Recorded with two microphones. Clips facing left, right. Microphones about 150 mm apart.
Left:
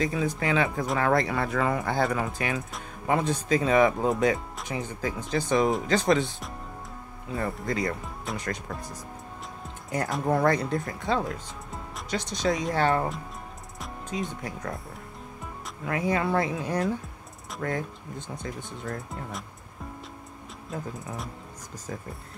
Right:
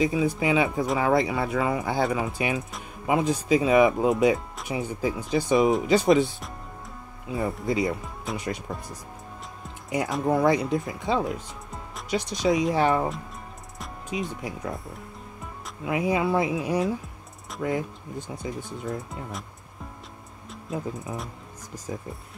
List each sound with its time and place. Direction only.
0.0 s speech: 5° right (ahead or behind)
2.3 s speech: 15° right (ahead or behind)
2.7 s speech: 5° right (ahead or behind)
9.8 s speech: centre (ahead or behind)
15.8 s speech: 15° right (ahead or behind)